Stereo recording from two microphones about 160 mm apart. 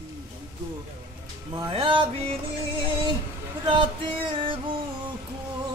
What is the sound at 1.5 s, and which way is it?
Music, 30° right (ahead or behind).